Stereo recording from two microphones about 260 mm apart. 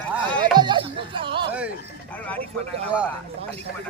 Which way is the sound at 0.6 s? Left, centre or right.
Centre.